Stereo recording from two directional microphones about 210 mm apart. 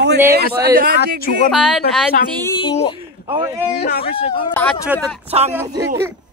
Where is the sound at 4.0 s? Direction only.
25° left (ahead or behind).